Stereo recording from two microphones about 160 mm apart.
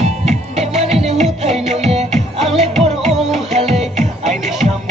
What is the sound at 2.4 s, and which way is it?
Music, centre (ahead or behind).